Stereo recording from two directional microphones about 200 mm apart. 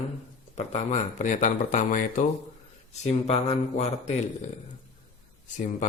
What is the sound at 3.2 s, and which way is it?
Speech, 30° left (ahead or behind).